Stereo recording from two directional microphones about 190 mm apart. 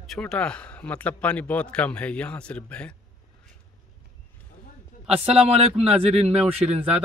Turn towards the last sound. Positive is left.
turn(degrees=-30)  # may be behind; listen again after turning